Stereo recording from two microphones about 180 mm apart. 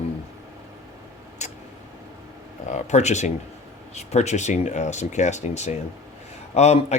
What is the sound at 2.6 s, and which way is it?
Speech, 40° left (ahead or behind).